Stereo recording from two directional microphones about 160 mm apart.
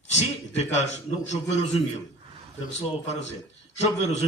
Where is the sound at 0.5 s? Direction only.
45° left (ahead or behind).